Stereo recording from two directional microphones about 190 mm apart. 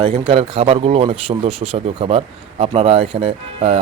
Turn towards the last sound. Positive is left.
turn(degrees=-30)  # may be behind; listen again after turning